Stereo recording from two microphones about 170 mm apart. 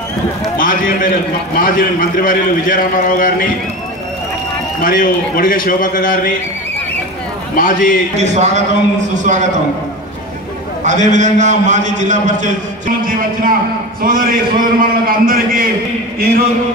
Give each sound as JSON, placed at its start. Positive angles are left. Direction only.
{"t": 0.6, "sound": "a man's voice", "side_deg": 55}
{"t": 4.8, "sound": "a man's voice", "side_deg": 55}
{"t": 7.5, "sound": "a man's voice", "side_deg": 55}
{"t": 8.2, "sound": "a man's voice", "side_deg": -45}
{"t": 10.8, "sound": "a man's voice", "side_deg": -45}